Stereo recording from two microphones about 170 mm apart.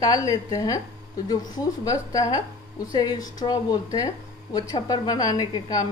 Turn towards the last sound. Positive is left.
turn(degrees=20)  # may be behind; listen again after turning